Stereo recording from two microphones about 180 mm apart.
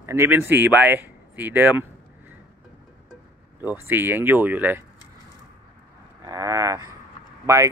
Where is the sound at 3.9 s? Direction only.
10° right (ahead or behind).